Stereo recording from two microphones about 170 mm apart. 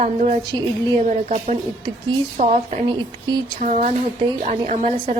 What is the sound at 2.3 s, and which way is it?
Speech, 45° right (ahead or behind).